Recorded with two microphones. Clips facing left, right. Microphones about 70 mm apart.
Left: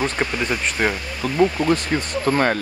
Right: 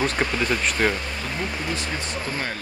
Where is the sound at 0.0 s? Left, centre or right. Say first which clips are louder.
Left 1 dB; centre.